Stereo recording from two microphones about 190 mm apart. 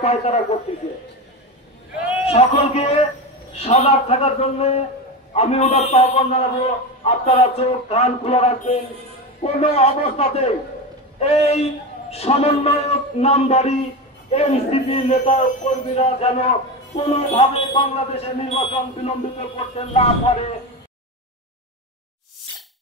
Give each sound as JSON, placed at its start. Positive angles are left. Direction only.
{"t": 0.0, "sound": "speech", "side_deg": 35}
{"t": 2.2, "sound": "speech", "side_deg": 35}